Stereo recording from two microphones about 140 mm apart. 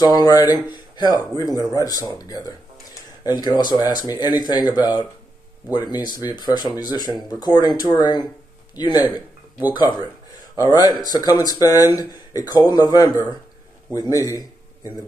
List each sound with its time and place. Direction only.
0.0 s a man's voice: 30° left (ahead or behind)